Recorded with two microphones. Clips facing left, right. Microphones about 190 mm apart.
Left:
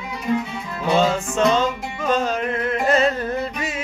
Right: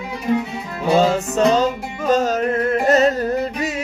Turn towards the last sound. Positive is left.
turn(degrees=-40)  # may be behind; listen again after turning